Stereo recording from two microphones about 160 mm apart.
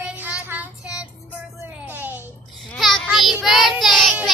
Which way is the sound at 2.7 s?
5° left (ahead or behind).